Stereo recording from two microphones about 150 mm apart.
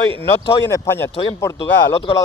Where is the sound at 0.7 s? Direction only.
20° left (ahead or behind).